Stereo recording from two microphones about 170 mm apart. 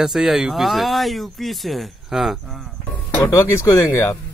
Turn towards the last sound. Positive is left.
turn(degrees=15)  # may be behind; listen again after turning